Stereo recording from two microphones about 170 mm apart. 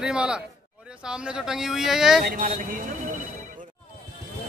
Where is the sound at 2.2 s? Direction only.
55° right (ahead or behind).